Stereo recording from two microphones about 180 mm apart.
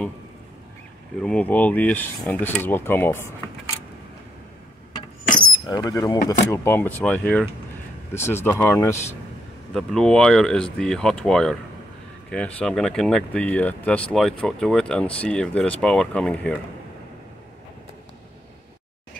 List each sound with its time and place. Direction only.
1.2 s cutlery: 5° left (ahead or behind)
5.7 s speech: 20° left (ahead or behind)
6.5 s cutlery: 15° left (ahead or behind)
9.8 s speech: 5° left (ahead or behind)